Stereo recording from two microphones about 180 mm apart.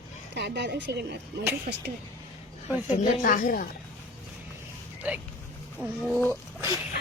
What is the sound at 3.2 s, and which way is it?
Speech, 50° left (ahead or behind).